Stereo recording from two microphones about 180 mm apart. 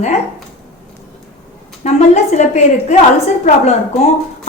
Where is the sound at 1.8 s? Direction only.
40° left (ahead or behind).